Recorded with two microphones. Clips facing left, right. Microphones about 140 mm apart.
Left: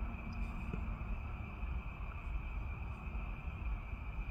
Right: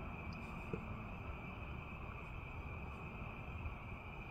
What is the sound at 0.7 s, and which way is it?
Vehicle, 25° right (ahead or behind).